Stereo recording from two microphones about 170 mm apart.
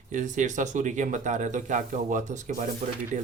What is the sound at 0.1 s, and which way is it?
Speech, 45° right (ahead or behind).